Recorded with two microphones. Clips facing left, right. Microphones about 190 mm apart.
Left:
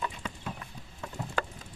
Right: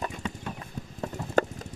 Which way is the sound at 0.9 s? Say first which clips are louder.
Right 9 dB; 45° right (ahead or behind).